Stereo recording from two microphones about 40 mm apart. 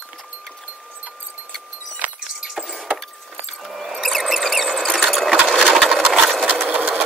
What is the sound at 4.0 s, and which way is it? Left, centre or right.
Squeal, centre.